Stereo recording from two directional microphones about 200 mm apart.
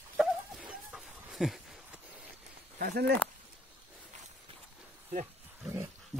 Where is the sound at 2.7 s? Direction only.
50° right (ahead or behind).